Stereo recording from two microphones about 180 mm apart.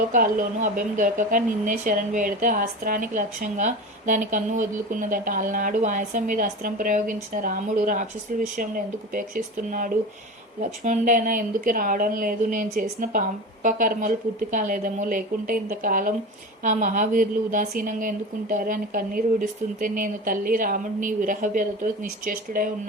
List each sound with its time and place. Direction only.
0.1 s speech: 50° right (ahead or behind)